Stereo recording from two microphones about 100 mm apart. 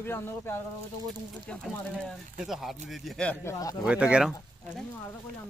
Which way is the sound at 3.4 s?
35° left (ahead or behind).